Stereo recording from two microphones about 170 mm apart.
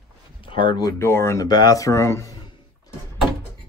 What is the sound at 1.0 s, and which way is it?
Speech, 15° left (ahead or behind).